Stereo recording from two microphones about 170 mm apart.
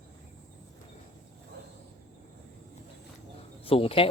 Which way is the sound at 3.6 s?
35° left (ahead or behind).